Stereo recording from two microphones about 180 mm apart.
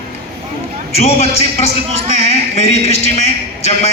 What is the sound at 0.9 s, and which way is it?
Speech, 35° left (ahead or behind).